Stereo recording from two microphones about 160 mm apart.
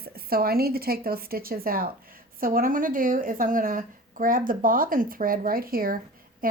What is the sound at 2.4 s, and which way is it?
A woman's voice, 60° right (ahead or behind).